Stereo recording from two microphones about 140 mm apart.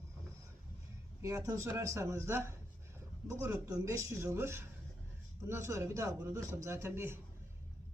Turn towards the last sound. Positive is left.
turn(degrees=-15)  # may be behind; listen again after turning